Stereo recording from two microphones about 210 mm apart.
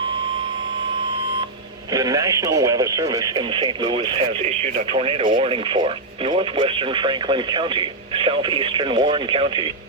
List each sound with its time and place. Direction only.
1.9 s speech: 15° right (ahead or behind)